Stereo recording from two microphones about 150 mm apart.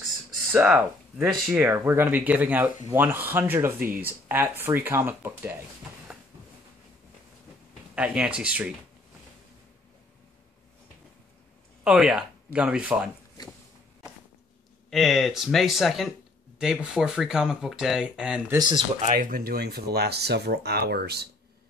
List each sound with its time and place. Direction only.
0.5 s speech: 10° right (ahead or behind)
7.9 s speech: 10° right (ahead or behind)
11.8 s speech: 5° right (ahead or behind)
14.9 s speech: centre (ahead or behind)
19.1 s speech: 80° right